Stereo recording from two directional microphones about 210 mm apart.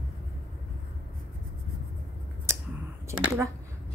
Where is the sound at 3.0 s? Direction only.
10° right (ahead or behind).